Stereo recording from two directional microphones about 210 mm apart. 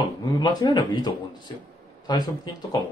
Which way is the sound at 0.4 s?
20° left (ahead or behind).